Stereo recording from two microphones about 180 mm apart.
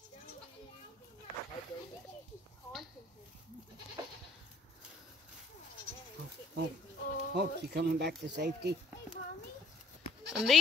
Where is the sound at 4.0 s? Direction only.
25° right (ahead or behind).